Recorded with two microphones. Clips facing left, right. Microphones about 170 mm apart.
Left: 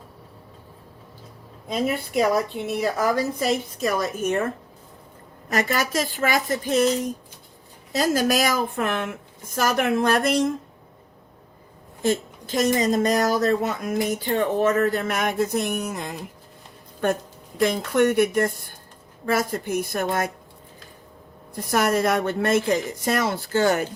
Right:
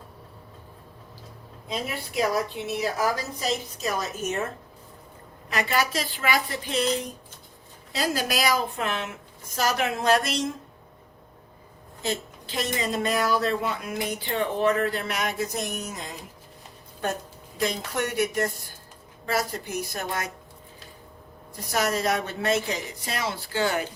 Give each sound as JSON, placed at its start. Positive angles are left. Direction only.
{"t": 2.1, "sound": "a woman's voice", "side_deg": 50}
{"t": 5.5, "sound": "a woman's voice", "side_deg": 45}
{"t": 12.0, "sound": "a woman's voice", "side_deg": 45}
{"t": 17.6, "sound": "a woman's voice", "side_deg": 55}
{"t": 21.5, "sound": "a woman's voice", "side_deg": 55}